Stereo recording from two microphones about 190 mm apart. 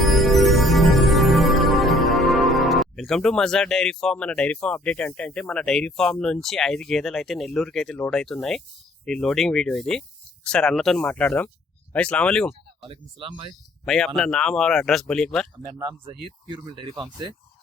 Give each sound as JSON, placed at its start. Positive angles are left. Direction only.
{"t": 0.0, "sound": "music", "side_deg": 0}
{"t": 9.0, "sound": "speech", "side_deg": 5}
{"t": 12.8, "sound": "speech", "side_deg": -25}
{"t": 13.8, "sound": "speech", "side_deg": 5}
{"t": 15.8, "sound": "speech", "side_deg": -25}